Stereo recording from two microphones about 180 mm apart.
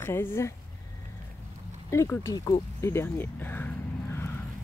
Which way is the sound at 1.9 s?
15° left (ahead or behind).